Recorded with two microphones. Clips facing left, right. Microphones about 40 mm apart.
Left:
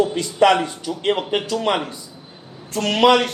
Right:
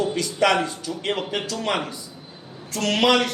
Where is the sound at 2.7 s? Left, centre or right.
Left.